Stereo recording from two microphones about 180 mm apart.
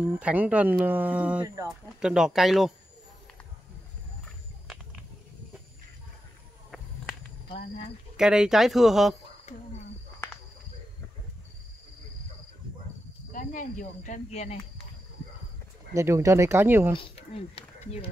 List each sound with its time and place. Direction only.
0.0 s speech: 10° right (ahead or behind)
6.7 s walk: centre (ahead or behind)
7.5 s speech: 35° left (ahead or behind)
8.2 s speech: 5° right (ahead or behind)
13.3 s speech: 45° left (ahead or behind)
15.9 s speech: 15° right (ahead or behind)
16.9 s speech: 30° left (ahead or behind)